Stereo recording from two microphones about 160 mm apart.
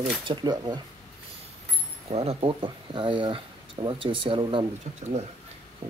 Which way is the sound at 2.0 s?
40° right (ahead or behind).